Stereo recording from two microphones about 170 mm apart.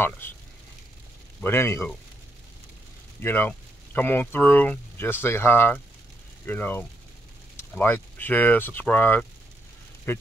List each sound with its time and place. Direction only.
1.4 s speech: 15° left (ahead or behind)
3.2 s speech: 10° left (ahead or behind)